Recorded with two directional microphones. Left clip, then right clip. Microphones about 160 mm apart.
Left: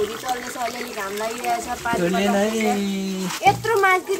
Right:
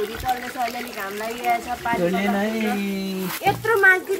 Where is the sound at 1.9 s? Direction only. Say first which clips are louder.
Left 1 dB; centre (ahead or behind).